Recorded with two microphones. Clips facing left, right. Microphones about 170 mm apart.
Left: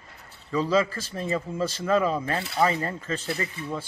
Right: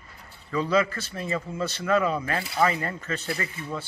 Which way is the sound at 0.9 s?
35° left (ahead or behind).